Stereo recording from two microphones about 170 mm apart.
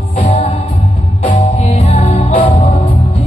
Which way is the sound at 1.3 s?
40° left (ahead or behind).